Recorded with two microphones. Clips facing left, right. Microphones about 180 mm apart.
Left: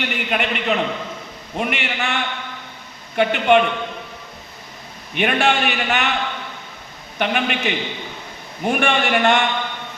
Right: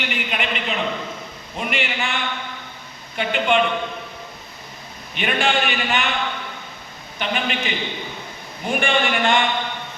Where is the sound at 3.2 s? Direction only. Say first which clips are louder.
Left 5 dB; 60° left (ahead or behind).